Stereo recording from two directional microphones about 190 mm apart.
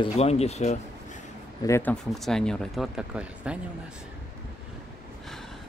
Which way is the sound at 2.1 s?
Centre (ahead or behind).